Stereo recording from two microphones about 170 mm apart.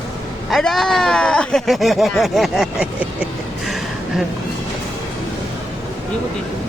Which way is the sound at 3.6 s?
Centre (ahead or behind).